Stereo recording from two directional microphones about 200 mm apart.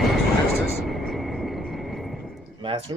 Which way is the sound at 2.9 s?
25° right (ahead or behind).